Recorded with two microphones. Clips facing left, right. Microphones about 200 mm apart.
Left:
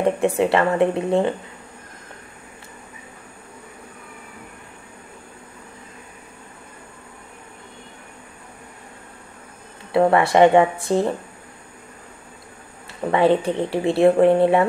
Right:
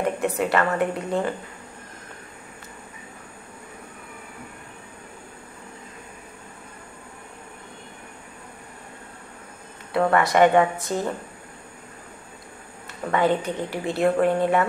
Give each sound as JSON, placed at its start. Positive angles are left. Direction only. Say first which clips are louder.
{"t": 0.0, "sound": "speech", "louder": "left 5 dB", "side_deg": 25}
{"t": 9.9, "sound": "speech", "louder": "left 4 dB", "side_deg": 20}
{"t": 13.1, "sound": "speech", "louder": "left 5 dB", "side_deg": 25}